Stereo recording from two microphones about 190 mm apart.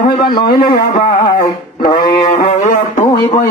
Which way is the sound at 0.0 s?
45° left (ahead or behind).